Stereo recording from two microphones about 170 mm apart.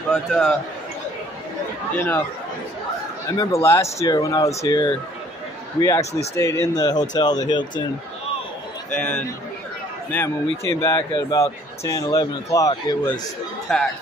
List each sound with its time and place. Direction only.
0.1 s a man's voice: 5° left (ahead or behind)
2.0 s a man's voice: 10° left (ahead or behind)
3.3 s speech: 15° left (ahead or behind)
6.3 s speech: 15° left (ahead or behind)
8.9 s a man's voice: 5° left (ahead or behind)
13.7 s a man's voice: 5° left (ahead or behind)